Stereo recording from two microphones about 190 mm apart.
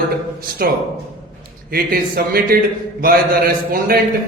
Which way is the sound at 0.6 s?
50° right (ahead or behind).